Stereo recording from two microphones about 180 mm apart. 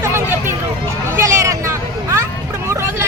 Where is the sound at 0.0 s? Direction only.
10° right (ahead or behind).